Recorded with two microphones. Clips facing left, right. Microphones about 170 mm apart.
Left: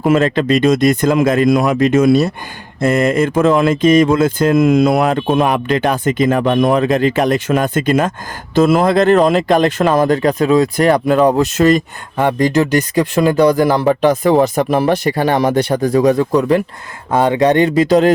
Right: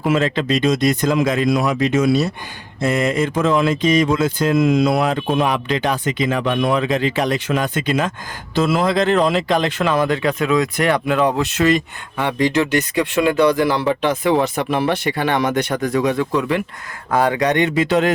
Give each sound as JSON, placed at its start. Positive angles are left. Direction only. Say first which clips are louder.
{"t": 0.0, "sound": "speech", "louder": "left 5 dB", "side_deg": 50}
{"t": 17.1, "sound": "speech", "louder": "left 5 dB", "side_deg": 25}